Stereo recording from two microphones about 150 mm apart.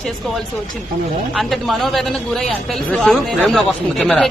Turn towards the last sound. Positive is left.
turn(degrees=0)  # may be behind; listen again after turning